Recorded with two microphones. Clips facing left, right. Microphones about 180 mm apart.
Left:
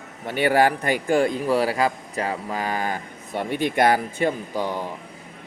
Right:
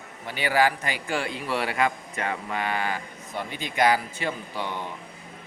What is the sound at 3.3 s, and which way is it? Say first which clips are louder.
A man's voice: left 6 dB; 60° left (ahead or behind).